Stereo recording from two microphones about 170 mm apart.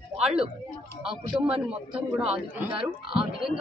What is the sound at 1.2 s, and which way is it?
A man's voice, 30° right (ahead or behind).